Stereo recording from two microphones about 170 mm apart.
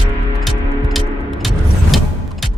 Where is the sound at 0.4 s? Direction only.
Centre (ahead or behind).